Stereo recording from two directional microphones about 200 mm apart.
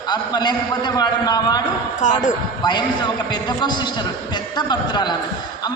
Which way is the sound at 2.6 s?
20° left (ahead or behind).